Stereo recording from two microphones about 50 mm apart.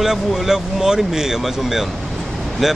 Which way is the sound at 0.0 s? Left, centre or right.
Centre.